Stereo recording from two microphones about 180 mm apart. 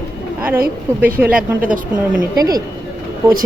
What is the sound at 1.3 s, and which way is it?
Speech, 50° right (ahead or behind).